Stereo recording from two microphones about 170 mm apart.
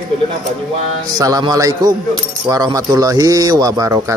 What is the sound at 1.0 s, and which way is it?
A man's voice, 20° right (ahead or behind).